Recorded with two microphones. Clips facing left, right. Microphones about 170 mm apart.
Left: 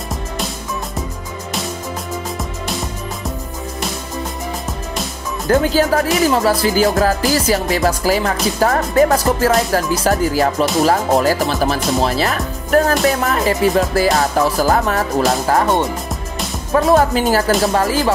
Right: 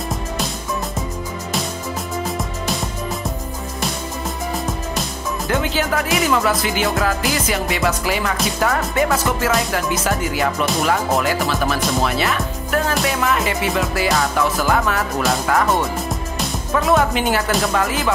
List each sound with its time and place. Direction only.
5.5 s speech: 40° left (ahead or behind)
16.7 s speech: 35° left (ahead or behind)